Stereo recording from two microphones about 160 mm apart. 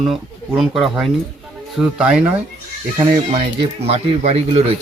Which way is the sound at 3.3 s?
35° right (ahead or behind).